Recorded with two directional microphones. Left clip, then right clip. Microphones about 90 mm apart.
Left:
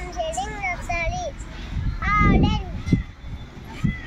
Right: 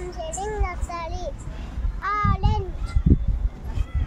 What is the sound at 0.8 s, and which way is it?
Child singing, 50° right (ahead or behind).